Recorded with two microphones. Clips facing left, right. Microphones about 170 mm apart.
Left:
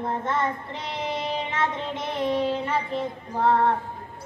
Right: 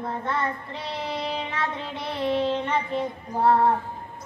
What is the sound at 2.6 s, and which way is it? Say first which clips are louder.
Child singing: right 1 dB; 5° left (ahead or behind).